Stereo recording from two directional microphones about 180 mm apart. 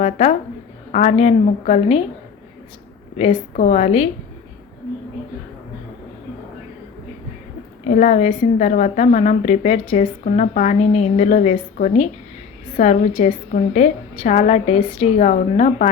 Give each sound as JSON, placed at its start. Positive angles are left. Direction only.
{"t": 0.0, "sound": "a woman's voice", "side_deg": 35}
{"t": 3.2, "sound": "a woman's voice", "side_deg": 40}
{"t": 7.9, "sound": "a woman's voice", "side_deg": 45}